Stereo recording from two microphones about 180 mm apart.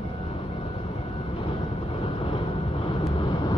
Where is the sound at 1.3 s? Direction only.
30° left (ahead or behind).